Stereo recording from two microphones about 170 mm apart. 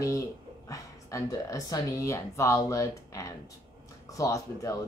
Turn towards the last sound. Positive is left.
turn(degrees=20)  # may be behind; listen again after turning